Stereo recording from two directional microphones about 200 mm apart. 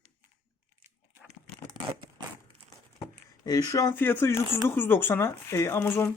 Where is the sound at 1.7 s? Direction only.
25° right (ahead or behind).